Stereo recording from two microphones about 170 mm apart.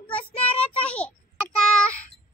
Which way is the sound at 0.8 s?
10° left (ahead or behind).